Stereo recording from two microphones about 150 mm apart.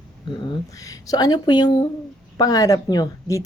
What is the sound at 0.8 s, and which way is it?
Speech, 25° left (ahead or behind).